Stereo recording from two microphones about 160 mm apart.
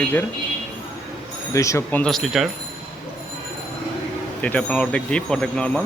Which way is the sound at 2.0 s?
Centre (ahead or behind).